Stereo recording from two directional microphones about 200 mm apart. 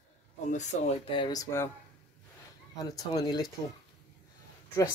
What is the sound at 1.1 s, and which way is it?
Speech, 20° left (ahead or behind).